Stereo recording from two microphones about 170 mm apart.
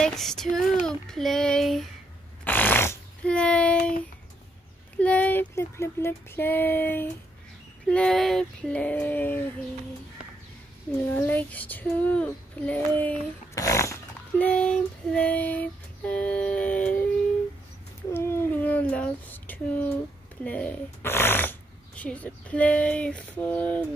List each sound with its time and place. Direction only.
0.0 s child singing: 5° left (ahead or behind)
2.4 s a sound: 10° left (ahead or behind)
4.9 s speech: 10° left (ahead or behind)
11.2 s speech: 10° left (ahead or behind)
14.4 s speech: 5° left (ahead or behind)
18.1 s child singing: 15° left (ahead or behind)
20.4 s speech: 10° left (ahead or behind)